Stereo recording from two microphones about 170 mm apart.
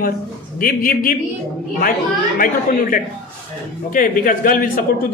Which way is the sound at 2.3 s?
55° left (ahead or behind).